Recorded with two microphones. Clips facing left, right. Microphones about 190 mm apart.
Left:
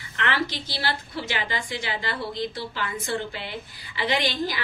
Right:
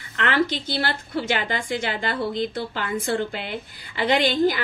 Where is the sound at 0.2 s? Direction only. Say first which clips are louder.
Right 5 dB; 55° right (ahead or behind).